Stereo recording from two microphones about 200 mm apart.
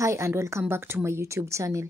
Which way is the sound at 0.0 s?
15° right (ahead or behind).